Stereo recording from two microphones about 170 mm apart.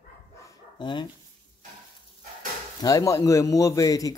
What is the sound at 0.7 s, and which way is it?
Speech, 30° left (ahead or behind).